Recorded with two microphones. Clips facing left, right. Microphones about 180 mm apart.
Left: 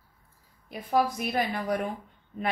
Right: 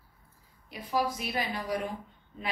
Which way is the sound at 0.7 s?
50° left (ahead or behind).